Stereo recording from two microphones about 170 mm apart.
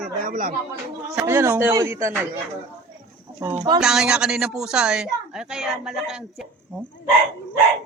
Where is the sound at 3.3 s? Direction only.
15° right (ahead or behind).